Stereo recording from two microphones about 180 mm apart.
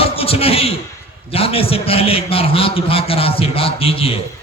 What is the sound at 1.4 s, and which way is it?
A man's voice, 30° left (ahead or behind).